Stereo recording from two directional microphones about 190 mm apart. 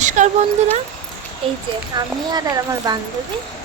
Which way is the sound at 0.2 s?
40° right (ahead or behind).